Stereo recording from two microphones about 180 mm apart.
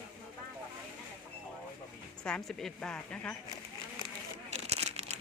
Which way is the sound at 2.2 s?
5° left (ahead or behind).